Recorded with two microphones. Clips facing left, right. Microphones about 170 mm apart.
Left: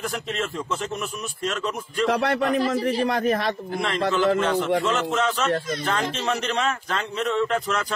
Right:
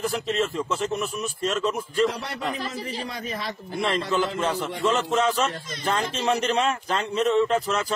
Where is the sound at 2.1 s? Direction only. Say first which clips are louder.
Left 8 dB; 70° left (ahead or behind).